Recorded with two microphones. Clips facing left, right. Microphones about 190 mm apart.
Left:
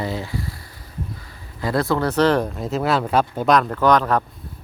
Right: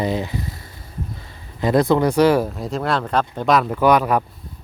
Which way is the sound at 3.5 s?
5° right (ahead or behind).